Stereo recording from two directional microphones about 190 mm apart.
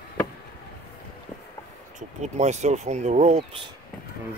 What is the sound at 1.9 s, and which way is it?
Speech, 35° right (ahead or behind).